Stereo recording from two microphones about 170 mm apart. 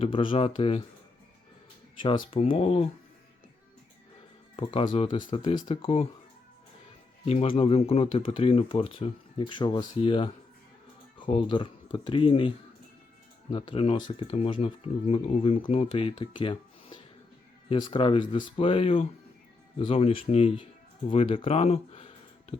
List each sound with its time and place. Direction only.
0.0 s speech: 30° left (ahead or behind)
2.3 s speech: 35° left (ahead or behind)
4.5 s speech: 30° left (ahead or behind)
7.3 s speech: 35° left (ahead or behind)
13.5 s speech: 30° left (ahead or behind)
21.1 s a sound: 35° left (ahead or behind)